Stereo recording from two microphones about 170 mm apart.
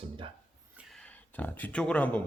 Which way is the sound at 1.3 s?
10° left (ahead or behind).